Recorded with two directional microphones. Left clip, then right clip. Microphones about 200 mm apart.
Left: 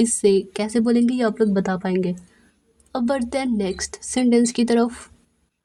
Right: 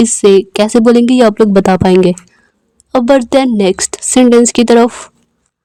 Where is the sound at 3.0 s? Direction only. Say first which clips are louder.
Right 15 dB; 30° right (ahead or behind).